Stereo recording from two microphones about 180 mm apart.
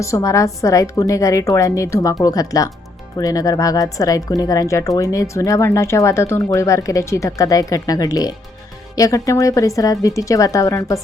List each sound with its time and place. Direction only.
0.0 s a woman's voice: 15° left (ahead or behind)